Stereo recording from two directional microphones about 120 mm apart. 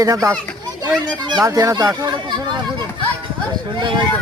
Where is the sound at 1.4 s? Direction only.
25° right (ahead or behind).